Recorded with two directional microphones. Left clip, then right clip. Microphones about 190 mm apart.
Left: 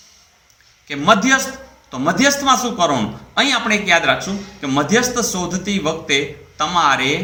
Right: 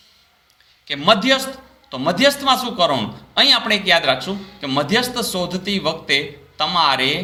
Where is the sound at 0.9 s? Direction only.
40° right (ahead or behind).